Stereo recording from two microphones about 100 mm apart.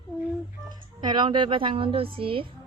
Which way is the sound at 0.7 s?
45° right (ahead or behind).